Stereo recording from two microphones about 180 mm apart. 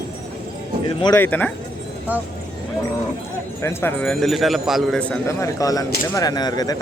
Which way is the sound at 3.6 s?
15° left (ahead or behind).